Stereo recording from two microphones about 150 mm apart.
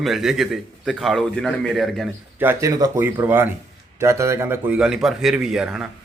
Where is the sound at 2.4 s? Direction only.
20° right (ahead or behind).